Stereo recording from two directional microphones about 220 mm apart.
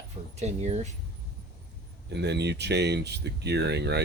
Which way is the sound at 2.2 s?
50° right (ahead or behind).